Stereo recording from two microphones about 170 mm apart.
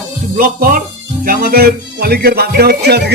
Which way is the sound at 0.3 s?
55° right (ahead or behind).